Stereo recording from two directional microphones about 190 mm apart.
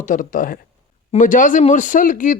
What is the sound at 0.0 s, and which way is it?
Speech, 45° left (ahead or behind).